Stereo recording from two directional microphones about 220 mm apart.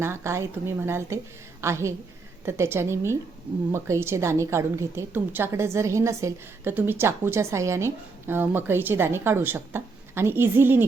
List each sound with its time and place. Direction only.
0.0 s a woman's voice: 10° right (ahead or behind)